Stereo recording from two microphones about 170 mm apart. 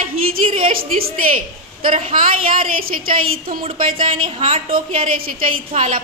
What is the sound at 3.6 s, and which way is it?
A woman's voice, 30° right (ahead or behind).